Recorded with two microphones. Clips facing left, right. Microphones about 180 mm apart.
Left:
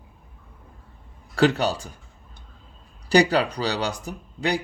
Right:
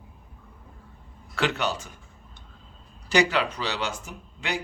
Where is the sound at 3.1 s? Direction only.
35° left (ahead or behind).